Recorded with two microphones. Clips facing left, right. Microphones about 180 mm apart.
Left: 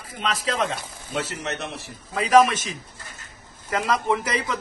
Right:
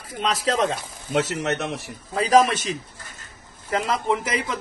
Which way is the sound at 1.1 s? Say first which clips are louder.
Right 6 dB; 90° right.